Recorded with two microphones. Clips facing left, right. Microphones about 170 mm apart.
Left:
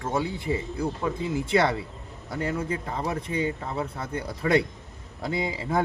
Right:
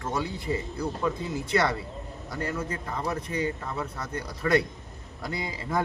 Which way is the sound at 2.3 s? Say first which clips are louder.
Left 4 dB; 20° left (ahead or behind).